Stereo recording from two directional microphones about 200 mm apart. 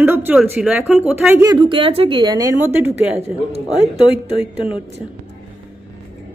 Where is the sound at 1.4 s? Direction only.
25° right (ahead or behind).